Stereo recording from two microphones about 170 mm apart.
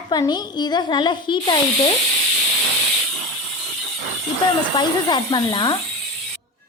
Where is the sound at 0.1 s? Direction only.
25° left (ahead or behind).